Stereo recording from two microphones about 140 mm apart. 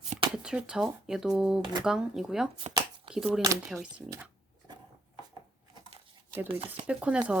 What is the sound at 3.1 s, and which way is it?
Speech, 5° right (ahead or behind).